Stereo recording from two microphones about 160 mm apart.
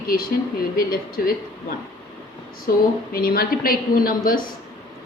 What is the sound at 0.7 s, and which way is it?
Speech, 65° left (ahead or behind).